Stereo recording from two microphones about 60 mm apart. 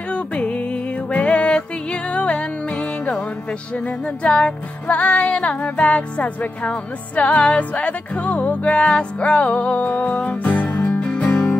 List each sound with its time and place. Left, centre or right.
0.1 s music: centre